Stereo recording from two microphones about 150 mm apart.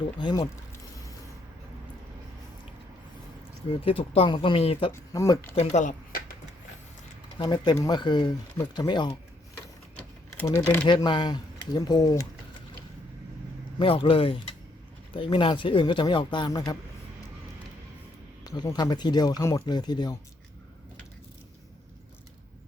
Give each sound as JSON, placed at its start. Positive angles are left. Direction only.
{"t": 0.2, "sound": "speech", "side_deg": 25}
{"t": 3.8, "sound": "speech", "side_deg": 40}
{"t": 5.1, "sound": "speech", "side_deg": 20}
{"t": 5.5, "sound": "speech", "side_deg": 55}
{"t": 7.3, "sound": "speech", "side_deg": 30}
{"t": 10.4, "sound": "speech", "side_deg": 15}
{"t": 10.8, "sound": "speech", "side_deg": 30}
{"t": 13.7, "sound": "speech", "side_deg": 35}
{"t": 18.4, "sound": "speech", "side_deg": 25}